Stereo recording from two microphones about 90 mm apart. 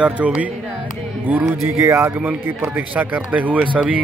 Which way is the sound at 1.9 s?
25° right (ahead or behind).